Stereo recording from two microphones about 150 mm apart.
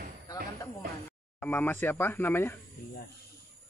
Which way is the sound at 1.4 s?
10° left (ahead or behind).